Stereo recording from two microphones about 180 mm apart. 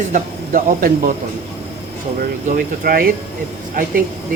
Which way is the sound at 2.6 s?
55° right (ahead or behind).